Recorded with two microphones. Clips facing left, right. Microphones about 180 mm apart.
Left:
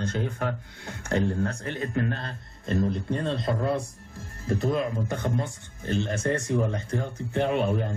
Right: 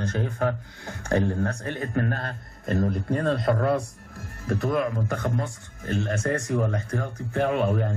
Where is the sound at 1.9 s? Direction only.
55° right (ahead or behind).